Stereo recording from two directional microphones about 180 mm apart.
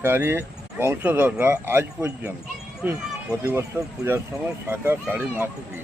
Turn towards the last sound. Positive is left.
turn(degrees=-10)  # may be behind; listen again after turning